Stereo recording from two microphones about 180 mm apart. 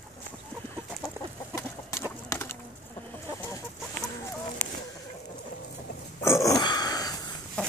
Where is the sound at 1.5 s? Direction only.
15° left (ahead or behind).